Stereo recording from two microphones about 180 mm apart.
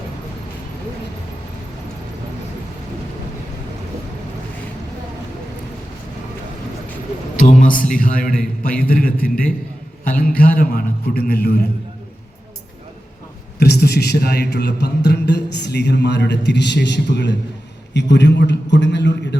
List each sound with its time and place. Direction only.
7.3 s a man's voice: 45° left (ahead or behind)
13.6 s a man's voice: 65° left (ahead or behind)